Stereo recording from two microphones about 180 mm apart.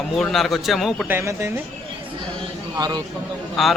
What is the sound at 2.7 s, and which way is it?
Speech, 20° right (ahead or behind).